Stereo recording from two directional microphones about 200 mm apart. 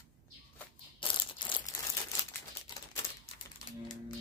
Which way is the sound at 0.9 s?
25° left (ahead or behind).